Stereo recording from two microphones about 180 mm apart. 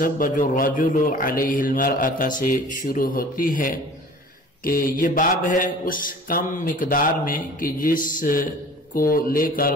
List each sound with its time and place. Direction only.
0.0 s mantra: 50° left (ahead or behind)